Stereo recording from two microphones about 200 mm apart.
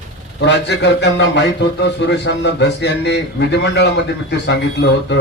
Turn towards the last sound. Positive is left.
turn(degrees=60)  # may be behind; listen again after turning